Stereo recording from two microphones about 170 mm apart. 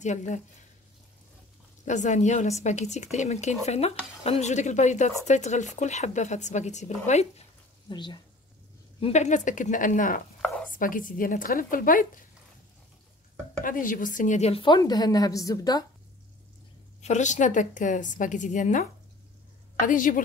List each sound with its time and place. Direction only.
0.0 s speech: 45° left (ahead or behind)
1.9 s speech: 45° left (ahead or behind)
7.9 s a woman's voice: 25° left (ahead or behind)
9.0 s speech: 40° left (ahead or behind)
10.4 s a sound: 5° left (ahead or behind)
10.7 s speech: 55° left (ahead or behind)
13.6 s a woman's voice: 55° left (ahead or behind); by 15.8 s 20° left (ahead or behind)
17.0 s speech: 45° left (ahead or behind)
19.9 s speech: 50° left (ahead or behind)